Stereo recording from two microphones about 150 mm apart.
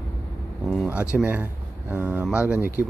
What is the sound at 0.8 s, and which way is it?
Speech, 10° right (ahead or behind).